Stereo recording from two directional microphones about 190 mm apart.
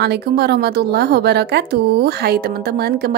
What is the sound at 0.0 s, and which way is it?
A woman's voice, 60° right (ahead or behind).